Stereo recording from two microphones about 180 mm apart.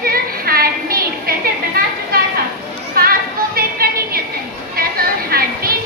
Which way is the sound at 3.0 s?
55° right (ahead or behind).